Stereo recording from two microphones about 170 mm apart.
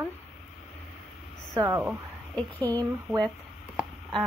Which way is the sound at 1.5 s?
15° right (ahead or behind).